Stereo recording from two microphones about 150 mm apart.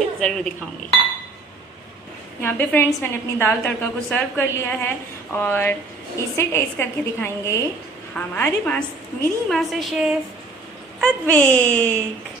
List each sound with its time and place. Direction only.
0.2 s a woman's voice: 5° left (ahead or behind)
2.4 s a woman's voice: 15° left (ahead or behind)